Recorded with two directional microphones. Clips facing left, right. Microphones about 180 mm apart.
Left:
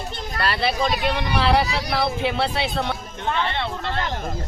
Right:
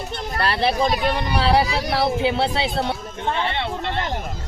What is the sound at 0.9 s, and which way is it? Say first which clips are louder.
Speech: right 2 dB; 40° right (ahead or behind).